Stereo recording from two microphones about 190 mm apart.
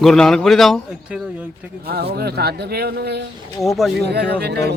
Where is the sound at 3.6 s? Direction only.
Centre (ahead or behind).